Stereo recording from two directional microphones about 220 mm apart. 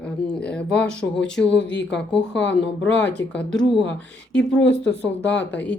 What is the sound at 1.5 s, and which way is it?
Speech, 55° left (ahead or behind).